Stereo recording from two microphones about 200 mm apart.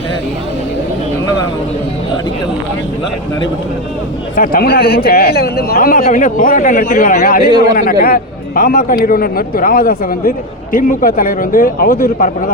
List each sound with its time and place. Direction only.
4.4 s a man's voice: 50° left (ahead or behind)